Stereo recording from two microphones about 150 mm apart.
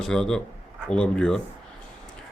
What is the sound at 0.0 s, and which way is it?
A man's voice, 5° left (ahead or behind).